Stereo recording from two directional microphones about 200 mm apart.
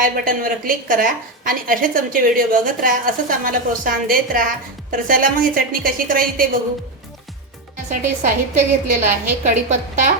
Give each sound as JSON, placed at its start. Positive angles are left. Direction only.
{"t": 0.0, "sound": "a woman's voice", "side_deg": -45}
{"t": 7.9, "sound": "a woman's voice", "side_deg": -40}